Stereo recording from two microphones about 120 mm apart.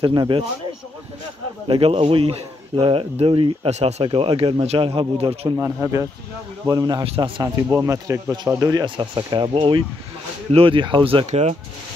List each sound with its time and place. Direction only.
0.0 s speech: 40° right (ahead or behind)
1.7 s speech: 50° right (ahead or behind)
5.6 s speech: 25° right (ahead or behind); by 7.4 s 40° right (ahead or behind)
7.4 s speech: 20° right (ahead or behind); by 11.2 s 45° right (ahead or behind)
11.2 s speech: 65° right (ahead or behind)